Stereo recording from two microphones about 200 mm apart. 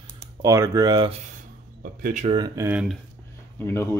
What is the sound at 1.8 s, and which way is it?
Speech, 45° right (ahead or behind).